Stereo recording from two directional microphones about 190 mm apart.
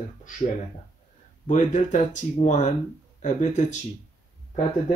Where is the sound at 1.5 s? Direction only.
40° left (ahead or behind).